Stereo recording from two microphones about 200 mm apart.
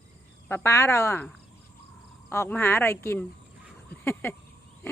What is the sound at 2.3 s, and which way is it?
Speech, 10° left (ahead or behind).